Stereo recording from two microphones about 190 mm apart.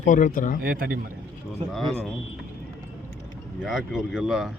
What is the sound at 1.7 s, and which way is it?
Speech, centre (ahead or behind).